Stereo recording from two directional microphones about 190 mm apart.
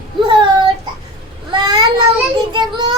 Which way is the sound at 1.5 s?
25° right (ahead or behind).